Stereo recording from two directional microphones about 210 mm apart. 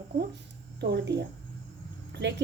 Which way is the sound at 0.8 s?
55° right (ahead or behind).